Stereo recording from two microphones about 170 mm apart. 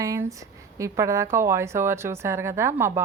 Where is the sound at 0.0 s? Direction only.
20° right (ahead or behind).